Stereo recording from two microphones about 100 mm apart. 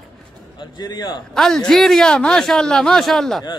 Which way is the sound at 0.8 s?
40° left (ahead or behind).